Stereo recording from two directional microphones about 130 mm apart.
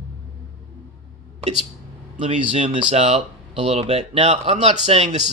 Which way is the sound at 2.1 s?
50° right (ahead or behind).